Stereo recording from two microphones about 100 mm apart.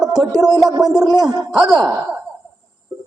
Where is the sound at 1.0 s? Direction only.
40° right (ahead or behind).